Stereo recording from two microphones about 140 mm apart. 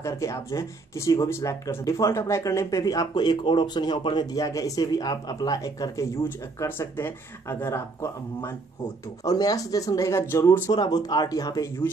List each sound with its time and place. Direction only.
0.0 s speech: 20° left (ahead or behind)
10.7 s speech: 30° left (ahead or behind)